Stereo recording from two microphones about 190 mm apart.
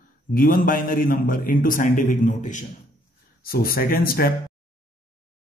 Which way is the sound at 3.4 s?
50° left (ahead or behind).